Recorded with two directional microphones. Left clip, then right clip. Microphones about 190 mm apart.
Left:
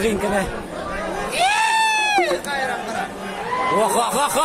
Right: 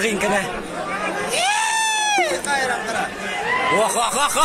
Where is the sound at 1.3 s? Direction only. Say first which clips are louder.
Left 3 dB; 30° right (ahead or behind).